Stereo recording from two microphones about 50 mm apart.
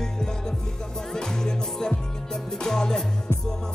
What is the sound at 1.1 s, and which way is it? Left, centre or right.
Music, centre.